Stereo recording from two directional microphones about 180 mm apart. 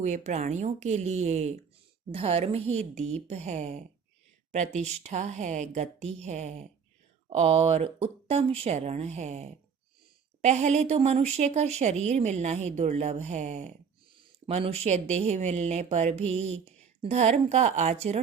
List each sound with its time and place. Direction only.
0.3 s speech: 40° right (ahead or behind)
14.1 s speech: 30° right (ahead or behind)